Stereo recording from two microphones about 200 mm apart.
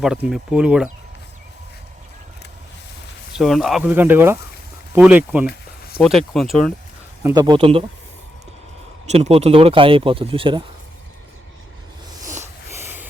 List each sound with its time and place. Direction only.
0.0 s speech: centre (ahead or behind)
3.3 s speech: centre (ahead or behind)
7.3 s speech: 20° right (ahead or behind)
9.0 s speech: 30° right (ahead or behind)
12.7 s a sound: 10° right (ahead or behind)